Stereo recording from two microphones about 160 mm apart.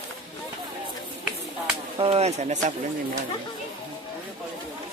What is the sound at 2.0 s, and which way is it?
Speech, 40° right (ahead or behind).